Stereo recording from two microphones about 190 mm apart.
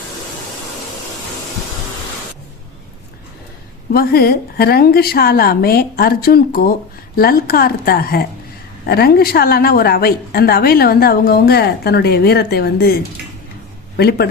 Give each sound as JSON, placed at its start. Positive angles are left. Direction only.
{"t": 3.9, "sound": "a woman's voice", "side_deg": 55}
{"t": 13.9, "sound": "speech", "side_deg": 60}